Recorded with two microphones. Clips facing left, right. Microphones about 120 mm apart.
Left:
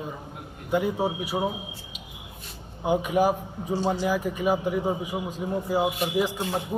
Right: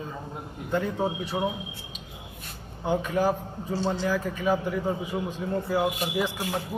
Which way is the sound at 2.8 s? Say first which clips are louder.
Left 2 dB; 15° left (ahead or behind).